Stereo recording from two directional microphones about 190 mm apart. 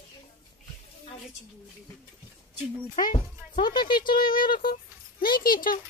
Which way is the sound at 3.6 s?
25° left (ahead or behind).